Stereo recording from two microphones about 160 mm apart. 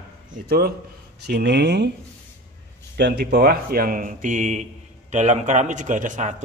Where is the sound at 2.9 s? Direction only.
90° right.